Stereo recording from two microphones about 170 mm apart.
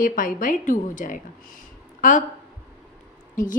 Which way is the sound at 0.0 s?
55° left (ahead or behind).